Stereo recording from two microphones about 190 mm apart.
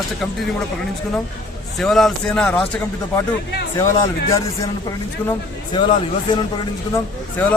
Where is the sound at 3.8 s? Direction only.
15° left (ahead or behind).